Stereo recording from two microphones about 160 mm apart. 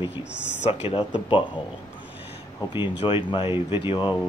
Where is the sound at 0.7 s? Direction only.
35° left (ahead or behind).